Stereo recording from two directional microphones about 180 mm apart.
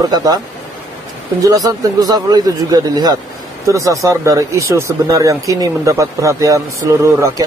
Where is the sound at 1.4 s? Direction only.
20° right (ahead or behind).